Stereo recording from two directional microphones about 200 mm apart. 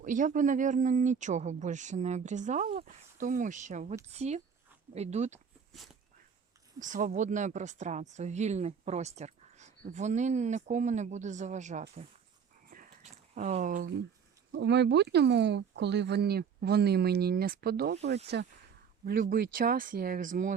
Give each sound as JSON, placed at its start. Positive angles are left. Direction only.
{"t": 0.0, "sound": "speech", "side_deg": -40}
{"t": 5.7, "sound": "a sound", "side_deg": 0}
{"t": 6.7, "sound": "speech", "side_deg": -40}
{"t": 12.7, "sound": "a sound", "side_deg": -40}
{"t": 14.5, "sound": "speech", "side_deg": -60}
{"t": 19.0, "sound": "speech", "side_deg": -45}